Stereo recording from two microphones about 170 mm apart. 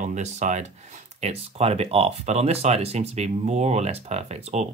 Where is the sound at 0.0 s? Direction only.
45° right (ahead or behind).